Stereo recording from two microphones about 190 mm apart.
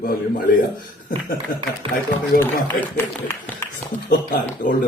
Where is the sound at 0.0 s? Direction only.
50° left (ahead or behind).